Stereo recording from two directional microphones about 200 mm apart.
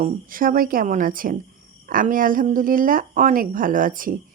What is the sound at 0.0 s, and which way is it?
A woman's voice, 45° right (ahead or behind).